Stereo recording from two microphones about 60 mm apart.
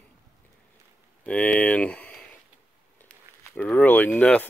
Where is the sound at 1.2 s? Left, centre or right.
Left.